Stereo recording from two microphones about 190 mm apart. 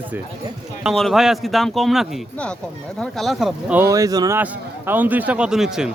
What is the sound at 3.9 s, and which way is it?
A man's voice, 20° right (ahead or behind).